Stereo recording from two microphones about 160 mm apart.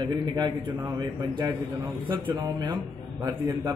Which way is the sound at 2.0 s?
30° right (ahead or behind).